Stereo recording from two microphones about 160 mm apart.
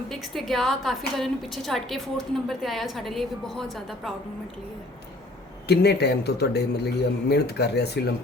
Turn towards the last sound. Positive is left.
turn(degrees=90)